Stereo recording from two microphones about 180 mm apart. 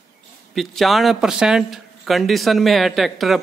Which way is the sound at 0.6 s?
Centre (ahead or behind).